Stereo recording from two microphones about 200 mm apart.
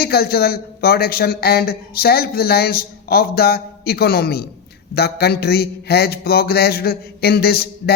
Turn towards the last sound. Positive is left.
turn(degrees=50)  # may be behind; listen again after turning